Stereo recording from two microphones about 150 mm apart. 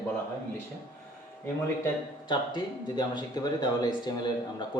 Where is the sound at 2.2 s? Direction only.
30° left (ahead or behind).